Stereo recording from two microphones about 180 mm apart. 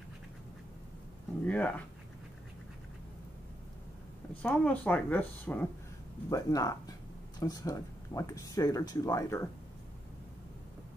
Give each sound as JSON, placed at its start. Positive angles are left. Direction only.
{"t": 1.4, "sound": "speech", "side_deg": 10}
{"t": 4.4, "sound": "speech", "side_deg": 10}